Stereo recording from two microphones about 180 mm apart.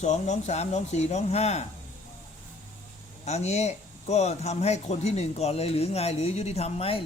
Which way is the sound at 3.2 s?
35° left (ahead or behind).